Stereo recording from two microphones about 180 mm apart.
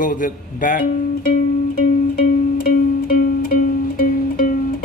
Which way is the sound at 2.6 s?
50° left (ahead or behind).